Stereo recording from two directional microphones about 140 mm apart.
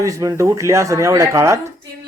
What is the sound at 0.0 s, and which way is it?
Speech, 25° right (ahead or behind).